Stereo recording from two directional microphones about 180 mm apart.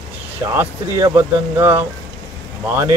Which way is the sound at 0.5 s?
15° right (ahead or behind).